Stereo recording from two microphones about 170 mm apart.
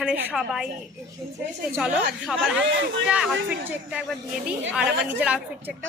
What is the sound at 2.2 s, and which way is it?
Speech, centre (ahead or behind).